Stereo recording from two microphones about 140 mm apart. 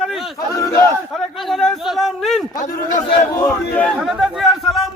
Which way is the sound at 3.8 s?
5° right (ahead or behind).